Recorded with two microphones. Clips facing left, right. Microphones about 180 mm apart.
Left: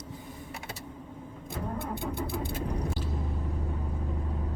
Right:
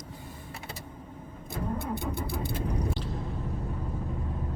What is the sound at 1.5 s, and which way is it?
Vehicle, 40° right (ahead or behind).